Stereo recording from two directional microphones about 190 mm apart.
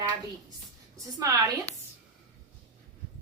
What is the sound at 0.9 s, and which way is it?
Speech, 15° right (ahead or behind).